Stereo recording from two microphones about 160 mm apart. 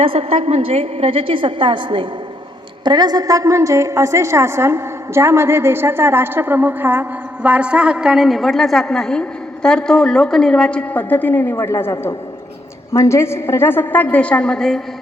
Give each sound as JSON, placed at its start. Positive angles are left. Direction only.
{"t": 0.0, "sound": "a woman's voice", "side_deg": -35}